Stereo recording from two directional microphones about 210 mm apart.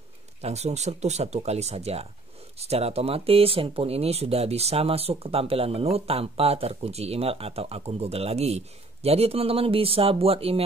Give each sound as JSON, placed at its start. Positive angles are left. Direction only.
{"t": 0.4, "sound": "speech", "side_deg": -30}